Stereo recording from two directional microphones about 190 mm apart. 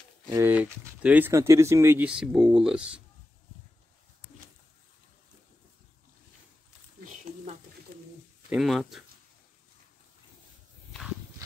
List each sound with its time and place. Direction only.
0.3 s speech: 10° right (ahead or behind)
7.9 s bird: 55° right (ahead or behind)
8.5 s speech: centre (ahead or behind)